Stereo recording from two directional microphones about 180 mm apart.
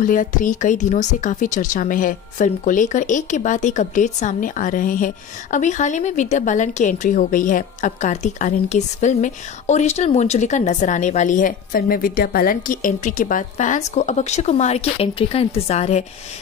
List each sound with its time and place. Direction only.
0.0 s speech: 45° left (ahead or behind)